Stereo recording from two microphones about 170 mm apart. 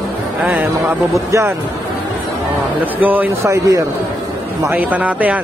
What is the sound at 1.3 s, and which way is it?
Speech, 15° right (ahead or behind).